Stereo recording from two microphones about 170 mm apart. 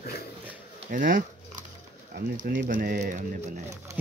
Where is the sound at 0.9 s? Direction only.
50° right (ahead or behind).